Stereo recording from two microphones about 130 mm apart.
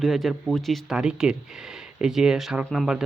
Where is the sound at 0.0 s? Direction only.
Centre (ahead or behind).